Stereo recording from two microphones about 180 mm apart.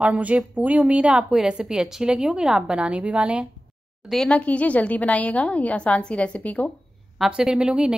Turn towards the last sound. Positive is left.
turn(degrees=-5)  # may be behind; listen again after turning